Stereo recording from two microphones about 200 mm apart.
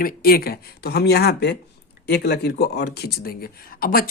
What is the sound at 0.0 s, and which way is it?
Speech, 50° left (ahead or behind).